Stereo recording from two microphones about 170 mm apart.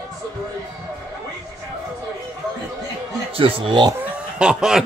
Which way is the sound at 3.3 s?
30° right (ahead or behind).